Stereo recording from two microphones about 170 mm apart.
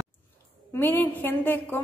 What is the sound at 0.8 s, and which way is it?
Speech, 10° left (ahead or behind).